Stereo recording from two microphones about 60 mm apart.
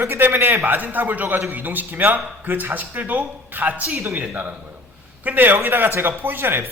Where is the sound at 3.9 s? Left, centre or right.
Right.